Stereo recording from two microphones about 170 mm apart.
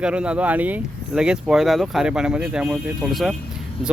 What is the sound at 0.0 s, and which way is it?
Speech, 5° right (ahead or behind).